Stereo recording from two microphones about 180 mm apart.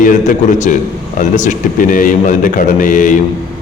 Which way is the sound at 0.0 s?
45° left (ahead or behind).